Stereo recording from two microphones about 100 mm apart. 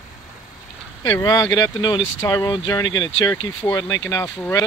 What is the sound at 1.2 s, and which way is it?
Speech, 45° left (ahead or behind).